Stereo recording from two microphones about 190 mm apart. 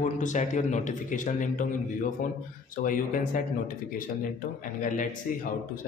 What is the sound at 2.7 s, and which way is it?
A man's voice, 45° left (ahead or behind).